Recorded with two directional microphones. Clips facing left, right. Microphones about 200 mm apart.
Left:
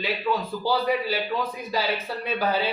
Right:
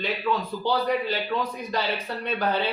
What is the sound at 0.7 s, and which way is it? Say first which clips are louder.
A man's voice: even; 5° left (ahead or behind).